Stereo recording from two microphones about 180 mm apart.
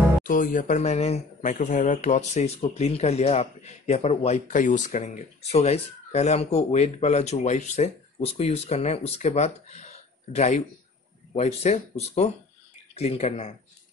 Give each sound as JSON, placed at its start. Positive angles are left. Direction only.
{"t": 0.2, "sound": "speech", "side_deg": 50}